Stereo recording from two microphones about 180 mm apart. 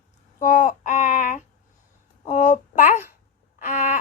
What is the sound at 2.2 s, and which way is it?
Speech, 40° left (ahead or behind).